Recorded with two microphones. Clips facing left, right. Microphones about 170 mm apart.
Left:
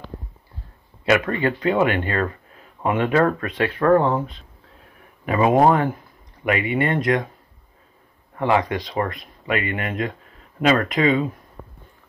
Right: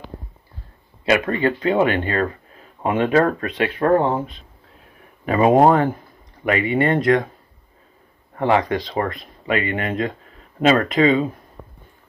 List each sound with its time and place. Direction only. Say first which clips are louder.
1.2 s speech: right 2 dB; 30° right (ahead or behind)
3.4 s speech: even; 20° right (ahead or behind)
5.2 s speech: right 2 dB; 35° right (ahead or behind)
8.4 s speech: right 2 dB; 35° right (ahead or behind)